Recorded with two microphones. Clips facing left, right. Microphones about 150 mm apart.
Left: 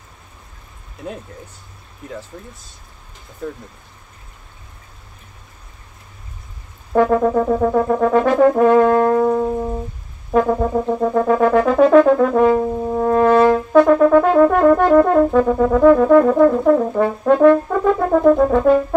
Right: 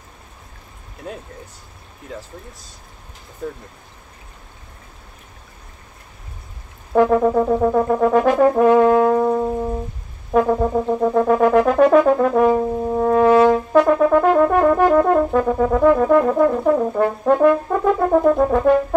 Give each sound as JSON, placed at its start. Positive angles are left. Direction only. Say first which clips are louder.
{"t": 6.9, "sound": "brass instrument", "louder": "even", "side_deg": 0}